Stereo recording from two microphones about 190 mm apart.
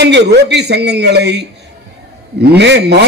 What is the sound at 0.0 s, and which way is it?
A man's voice, 65° right (ahead or behind).